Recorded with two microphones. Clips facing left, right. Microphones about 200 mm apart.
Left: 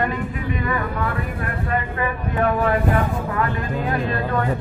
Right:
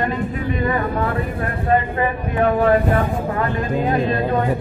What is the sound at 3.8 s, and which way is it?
Speech, 20° right (ahead or behind).